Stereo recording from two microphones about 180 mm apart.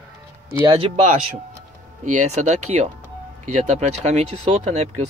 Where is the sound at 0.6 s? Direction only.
30° right (ahead or behind).